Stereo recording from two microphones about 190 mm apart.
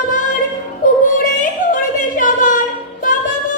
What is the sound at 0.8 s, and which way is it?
Music, 45° left (ahead or behind).